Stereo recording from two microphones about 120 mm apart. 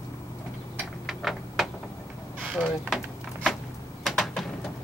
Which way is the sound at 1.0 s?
Centre (ahead or behind).